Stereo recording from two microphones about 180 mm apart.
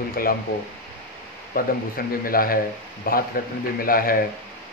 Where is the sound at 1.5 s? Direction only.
55° left (ahead or behind).